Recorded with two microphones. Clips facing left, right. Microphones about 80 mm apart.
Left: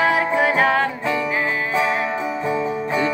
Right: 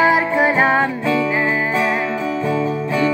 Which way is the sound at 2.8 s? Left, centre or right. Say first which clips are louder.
Right 3 dB; left.